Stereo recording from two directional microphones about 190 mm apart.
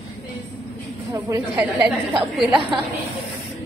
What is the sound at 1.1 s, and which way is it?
Speech, 15° right (ahead or behind).